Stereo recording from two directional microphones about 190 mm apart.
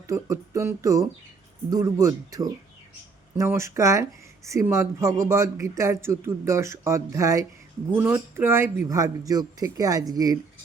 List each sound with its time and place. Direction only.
0.1 s speech: 15° right (ahead or behind)